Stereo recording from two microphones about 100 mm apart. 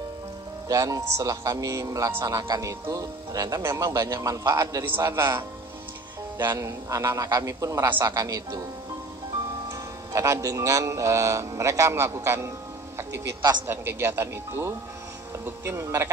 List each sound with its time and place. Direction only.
0.7 s speech: 35° right (ahead or behind)
4.8 s speech: 25° right (ahead or behind)
6.3 s speech: 35° right (ahead or behind)
9.7 s speech: 30° right (ahead or behind)
13.4 s a woman's voice: 50° right (ahead or behind)
13.7 s speech: 25° right (ahead or behind)